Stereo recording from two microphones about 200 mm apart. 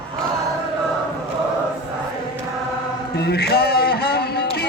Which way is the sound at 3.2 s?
55° left (ahead or behind).